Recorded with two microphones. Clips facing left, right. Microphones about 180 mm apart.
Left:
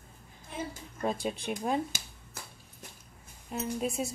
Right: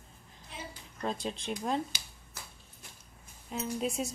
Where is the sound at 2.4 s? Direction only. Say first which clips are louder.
Left 3 dB; 50° left (ahead or behind).